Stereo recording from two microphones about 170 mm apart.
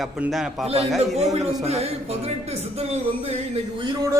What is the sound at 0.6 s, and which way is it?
A man's voice, 35° right (ahead or behind).